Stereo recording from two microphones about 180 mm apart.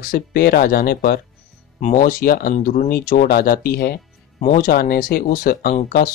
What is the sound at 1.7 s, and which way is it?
Speech, 45° left (ahead or behind).